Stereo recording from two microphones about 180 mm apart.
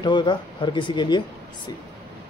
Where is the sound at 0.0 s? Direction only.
25° left (ahead or behind).